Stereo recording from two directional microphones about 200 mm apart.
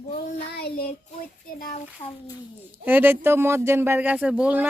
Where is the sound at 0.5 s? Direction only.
50° left (ahead or behind).